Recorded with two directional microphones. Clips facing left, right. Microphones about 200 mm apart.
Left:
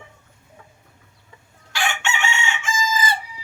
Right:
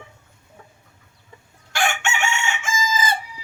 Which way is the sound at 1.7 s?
45° right (ahead or behind).